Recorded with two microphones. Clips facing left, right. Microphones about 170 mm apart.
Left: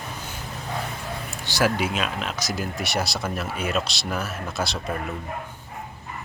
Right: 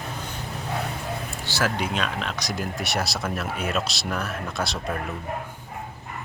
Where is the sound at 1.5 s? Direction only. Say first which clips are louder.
Left 3 dB; 10° left (ahead or behind).